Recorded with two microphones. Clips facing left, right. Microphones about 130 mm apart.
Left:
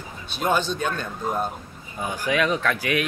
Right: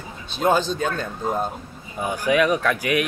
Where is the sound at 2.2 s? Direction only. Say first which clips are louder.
Right 4 dB; 15° right (ahead or behind).